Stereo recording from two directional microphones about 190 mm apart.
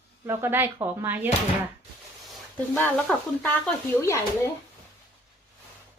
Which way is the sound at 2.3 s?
5° left (ahead or behind).